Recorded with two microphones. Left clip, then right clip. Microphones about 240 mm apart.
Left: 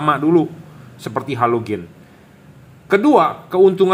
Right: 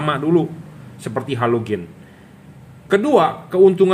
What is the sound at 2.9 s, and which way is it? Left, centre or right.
Speech, centre.